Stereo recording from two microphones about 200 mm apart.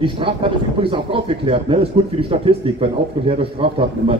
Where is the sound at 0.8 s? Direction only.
25° right (ahead or behind).